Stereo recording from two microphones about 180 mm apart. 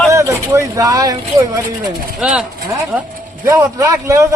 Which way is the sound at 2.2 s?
5° right (ahead or behind).